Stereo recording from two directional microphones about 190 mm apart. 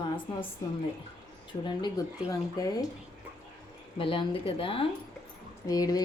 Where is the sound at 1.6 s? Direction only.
20° left (ahead or behind).